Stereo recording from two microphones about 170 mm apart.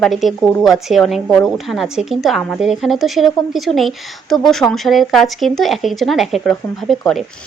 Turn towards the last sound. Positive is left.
turn(degrees=0)  # may be behind; listen again after turning